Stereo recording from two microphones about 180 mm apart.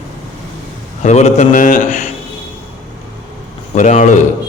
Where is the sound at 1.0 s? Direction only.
40° left (ahead or behind).